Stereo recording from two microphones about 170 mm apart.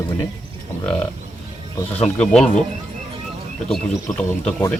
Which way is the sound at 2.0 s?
5° left (ahead or behind).